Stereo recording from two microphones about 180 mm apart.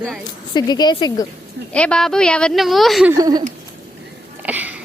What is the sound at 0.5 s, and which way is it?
Speech, 25° left (ahead or behind).